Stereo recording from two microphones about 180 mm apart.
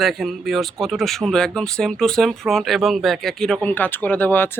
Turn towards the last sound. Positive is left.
turn(degrees=10)  # may be behind; listen again after turning